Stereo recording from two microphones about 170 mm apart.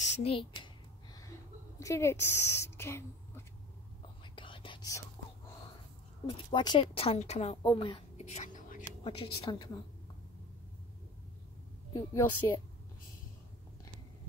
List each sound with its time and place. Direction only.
0.0 s speech: 40° left (ahead or behind)
1.8 s a woman's voice: 15° left (ahead or behind)
4.2 s whispering: 30° left (ahead or behind)
6.2 s a woman's voice: 30° left (ahead or behind)
7.6 s a woman's voice: 25° left (ahead or behind)
8.3 s whispering: 45° left (ahead or behind)
9.0 s a woman's voice: 30° left (ahead or behind)
11.9 s speech: 15° left (ahead or behind)